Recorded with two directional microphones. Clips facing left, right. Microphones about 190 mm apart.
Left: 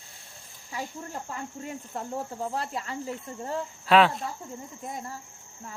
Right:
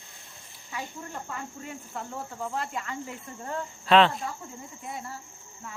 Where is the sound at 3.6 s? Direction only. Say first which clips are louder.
Even; 5° left (ahead or behind).